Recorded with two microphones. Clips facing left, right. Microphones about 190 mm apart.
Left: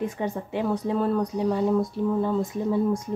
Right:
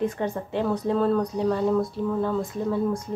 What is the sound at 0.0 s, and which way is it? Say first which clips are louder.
Speech: right 2 dB; 10° left (ahead or behind).